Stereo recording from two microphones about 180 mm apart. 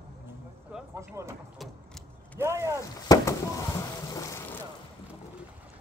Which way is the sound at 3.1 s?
15° left (ahead or behind).